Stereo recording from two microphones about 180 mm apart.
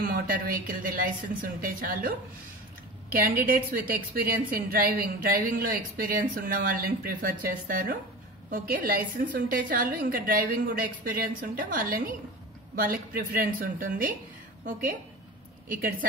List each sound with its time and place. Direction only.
0.0 s speech: 55° right (ahead or behind)
3.4 s speech: 50° right (ahead or behind)